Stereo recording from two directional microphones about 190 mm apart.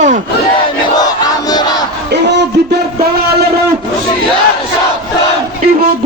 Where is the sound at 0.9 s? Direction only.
20° left (ahead or behind).